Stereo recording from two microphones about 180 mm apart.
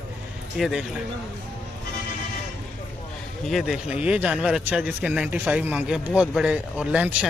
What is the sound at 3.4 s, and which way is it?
A man's voice, centre (ahead or behind).